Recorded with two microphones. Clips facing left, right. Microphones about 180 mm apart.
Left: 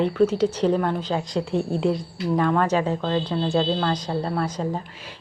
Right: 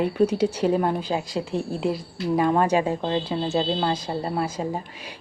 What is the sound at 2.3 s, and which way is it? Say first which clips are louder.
A woman's voice: right 1 dB; 15° right (ahead or behind).